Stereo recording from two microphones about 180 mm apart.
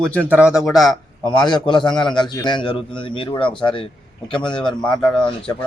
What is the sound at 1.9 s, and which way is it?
Speech, 5° left (ahead or behind).